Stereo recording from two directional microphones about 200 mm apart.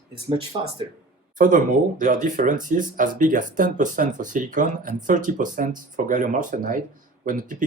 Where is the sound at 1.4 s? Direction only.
40° right (ahead or behind).